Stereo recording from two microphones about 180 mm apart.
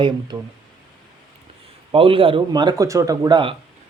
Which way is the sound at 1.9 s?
30° right (ahead or behind).